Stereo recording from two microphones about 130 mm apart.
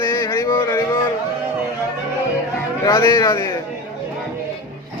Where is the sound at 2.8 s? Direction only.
25° left (ahead or behind).